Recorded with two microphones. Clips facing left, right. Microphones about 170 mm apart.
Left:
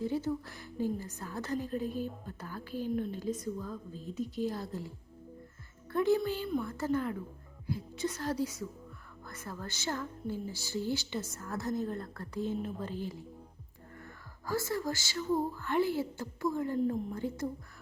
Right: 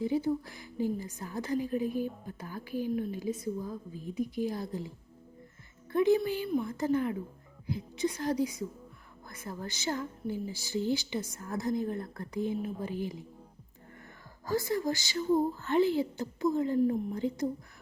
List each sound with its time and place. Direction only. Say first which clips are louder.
0.0 s a woman's voice: right 3 dB; 15° right (ahead or behind)
5.9 s a woman's voice: right 3 dB; 15° right (ahead or behind)
14.4 s a woman's voice: right 3 dB; 15° right (ahead or behind)